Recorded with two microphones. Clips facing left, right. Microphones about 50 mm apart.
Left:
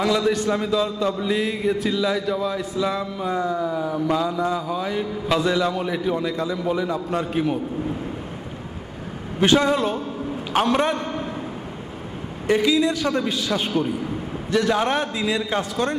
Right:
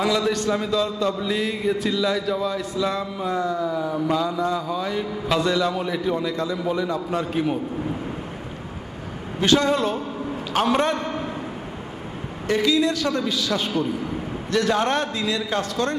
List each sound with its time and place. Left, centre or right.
0.0 s a man's voice: centre
9.4 s a man's voice: left
9.7 s a man's voice: centre
11.0 s a sound: right
12.4 s a man's voice: centre
13.1 s a man's voice: left
14.5 s a man's voice: centre
15.2 s a man's voice: centre